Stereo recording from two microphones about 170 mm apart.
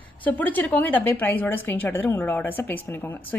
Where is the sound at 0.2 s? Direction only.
10° left (ahead or behind).